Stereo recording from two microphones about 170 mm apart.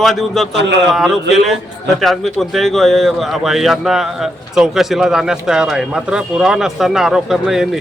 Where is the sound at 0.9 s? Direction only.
Centre (ahead or behind).